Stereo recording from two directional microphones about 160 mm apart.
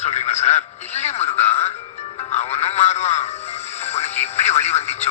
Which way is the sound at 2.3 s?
45° left (ahead or behind).